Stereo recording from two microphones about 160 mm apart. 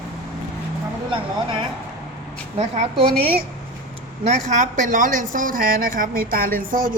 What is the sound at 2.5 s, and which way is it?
Speech, 40° right (ahead or behind).